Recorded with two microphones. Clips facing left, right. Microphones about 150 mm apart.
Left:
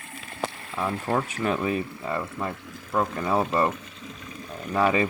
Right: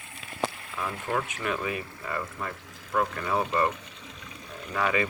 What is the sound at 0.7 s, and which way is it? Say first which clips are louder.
Speech: left 8 dB; 35° left (ahead or behind).